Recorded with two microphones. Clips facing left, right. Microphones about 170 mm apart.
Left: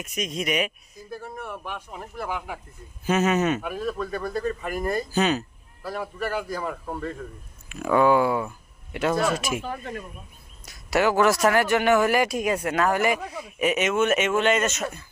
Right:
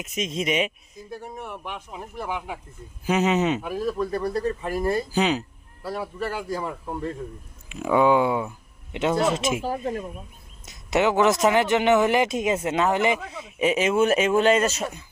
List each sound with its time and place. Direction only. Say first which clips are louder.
0.0 s speech: right 2 dB; 25° right (ahead or behind)
3.7 s a man's voice: right 3 dB; 30° right (ahead or behind)
5.1 s speech: left 2 dB; 15° right (ahead or behind)
5.8 s a man's voice: right 1 dB; 30° right (ahead or behind)